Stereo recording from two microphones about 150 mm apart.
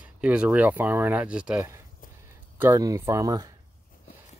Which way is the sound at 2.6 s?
20° right (ahead or behind).